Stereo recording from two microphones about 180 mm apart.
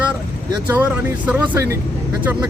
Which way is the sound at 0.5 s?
10° right (ahead or behind).